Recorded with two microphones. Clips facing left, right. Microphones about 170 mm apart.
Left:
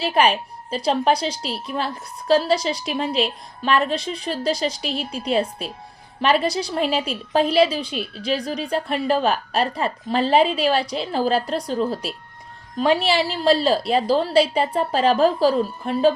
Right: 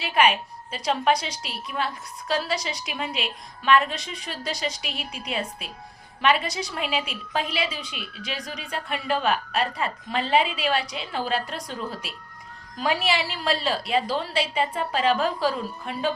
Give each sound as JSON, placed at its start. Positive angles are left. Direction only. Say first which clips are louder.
{"t": 0.0, "sound": "a woman's voice", "louder": "left 3 dB", "side_deg": 35}